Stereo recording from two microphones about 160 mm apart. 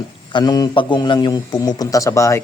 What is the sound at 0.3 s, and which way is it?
Speech, 25° left (ahead or behind).